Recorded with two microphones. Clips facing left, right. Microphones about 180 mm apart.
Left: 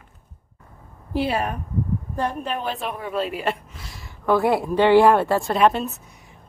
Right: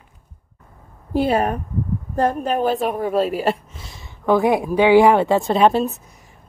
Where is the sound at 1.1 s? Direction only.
45° right (ahead or behind).